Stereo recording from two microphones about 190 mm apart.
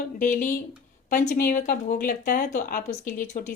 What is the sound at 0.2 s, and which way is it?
A woman's voice, 45° left (ahead or behind).